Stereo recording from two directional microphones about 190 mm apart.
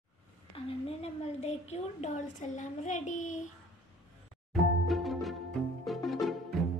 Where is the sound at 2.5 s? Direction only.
40° left (ahead or behind).